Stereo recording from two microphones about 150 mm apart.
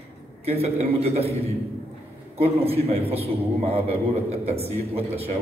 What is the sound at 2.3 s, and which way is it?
A man's voice, 40° right (ahead or behind).